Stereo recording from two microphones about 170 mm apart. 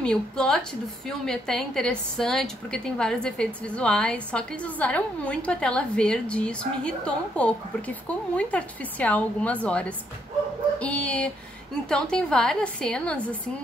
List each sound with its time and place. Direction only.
0.0 s a woman's voice: 5° left (ahead or behind)